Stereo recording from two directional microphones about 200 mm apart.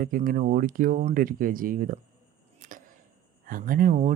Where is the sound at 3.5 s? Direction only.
45° right (ahead or behind).